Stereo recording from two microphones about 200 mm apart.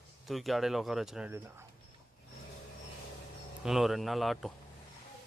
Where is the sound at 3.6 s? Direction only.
Centre (ahead or behind).